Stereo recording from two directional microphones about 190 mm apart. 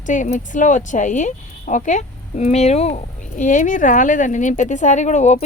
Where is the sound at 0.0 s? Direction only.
40° left (ahead or behind).